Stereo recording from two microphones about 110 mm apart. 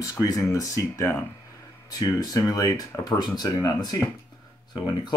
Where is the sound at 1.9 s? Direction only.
35° left (ahead or behind).